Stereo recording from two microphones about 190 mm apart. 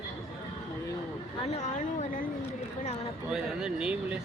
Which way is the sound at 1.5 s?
35° left (ahead or behind).